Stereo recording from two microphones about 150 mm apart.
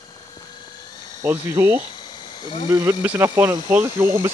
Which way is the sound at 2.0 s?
35° left (ahead or behind).